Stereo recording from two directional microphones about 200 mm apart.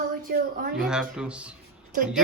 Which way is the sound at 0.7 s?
5° right (ahead or behind).